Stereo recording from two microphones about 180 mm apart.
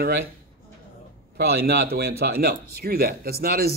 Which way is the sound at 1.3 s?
60° right (ahead or behind).